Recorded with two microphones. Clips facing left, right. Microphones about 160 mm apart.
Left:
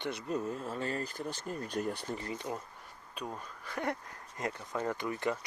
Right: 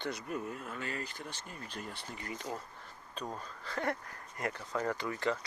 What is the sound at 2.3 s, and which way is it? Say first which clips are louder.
Speech: left 2 dB; 20° left (ahead or behind).